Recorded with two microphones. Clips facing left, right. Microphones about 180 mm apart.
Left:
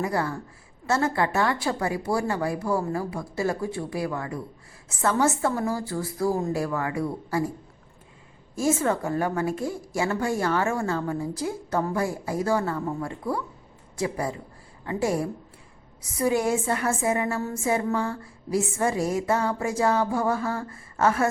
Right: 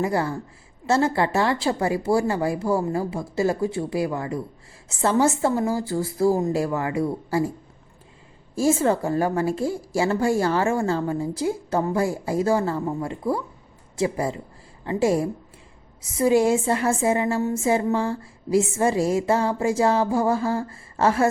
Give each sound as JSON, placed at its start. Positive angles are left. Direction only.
{"t": 0.0, "sound": "speech", "side_deg": -25}
{"t": 8.5, "sound": "speech", "side_deg": -30}